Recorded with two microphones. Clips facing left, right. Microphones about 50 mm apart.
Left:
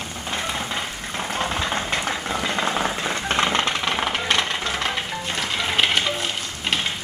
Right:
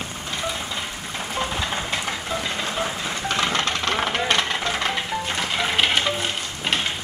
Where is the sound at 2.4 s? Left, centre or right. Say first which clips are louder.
Left 3 dB; left.